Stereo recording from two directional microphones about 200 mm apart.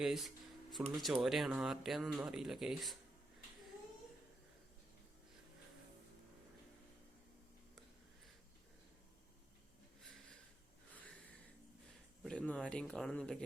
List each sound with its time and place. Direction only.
0.0 s speech: centre (ahead or behind)
12.2 s speech: 5° left (ahead or behind)